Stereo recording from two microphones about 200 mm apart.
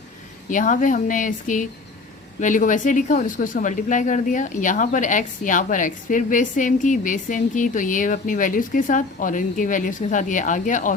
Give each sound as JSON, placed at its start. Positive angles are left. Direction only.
{"t": 0.5, "sound": "speech", "side_deg": 40}